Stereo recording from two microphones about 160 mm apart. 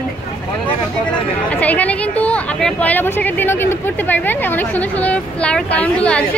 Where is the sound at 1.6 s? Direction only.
10° left (ahead or behind).